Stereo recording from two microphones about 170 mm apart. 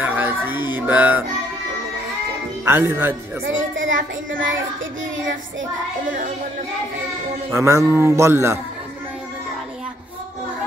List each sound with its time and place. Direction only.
0.0 s music: 10° right (ahead or behind)
2.6 s speech: 15° right (ahead or behind)
3.8 s child singing: 90° right
7.5 s speech: 15° right (ahead or behind)